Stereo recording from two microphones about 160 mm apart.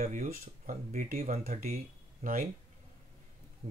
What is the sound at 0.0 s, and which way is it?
Speech, 55° right (ahead or behind).